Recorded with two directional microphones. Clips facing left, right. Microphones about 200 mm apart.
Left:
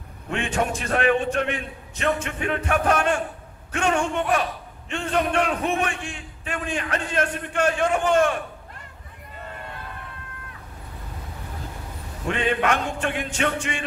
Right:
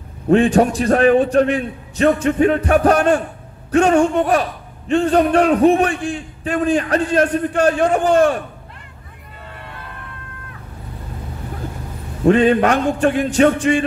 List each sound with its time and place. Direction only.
0.3 s a man's voice: 35° right (ahead or behind)
12.3 s a man's voice: 40° right (ahead or behind)